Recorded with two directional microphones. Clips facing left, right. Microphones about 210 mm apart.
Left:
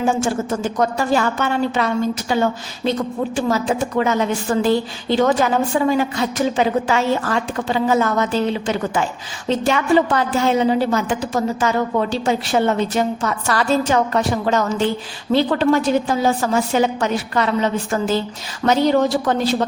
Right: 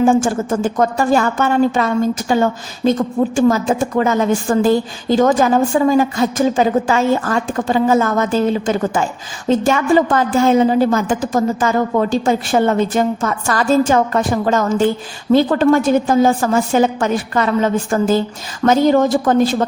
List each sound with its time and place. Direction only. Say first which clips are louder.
0.0 s a woman's voice: right 5 dB; 50° right (ahead or behind)